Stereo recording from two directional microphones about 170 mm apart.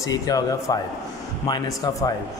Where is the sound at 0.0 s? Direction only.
20° left (ahead or behind).